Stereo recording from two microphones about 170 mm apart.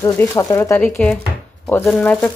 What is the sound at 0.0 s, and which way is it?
Speech, 15° left (ahead or behind).